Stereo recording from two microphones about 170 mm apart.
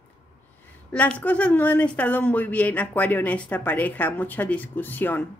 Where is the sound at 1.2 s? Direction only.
10° left (ahead or behind).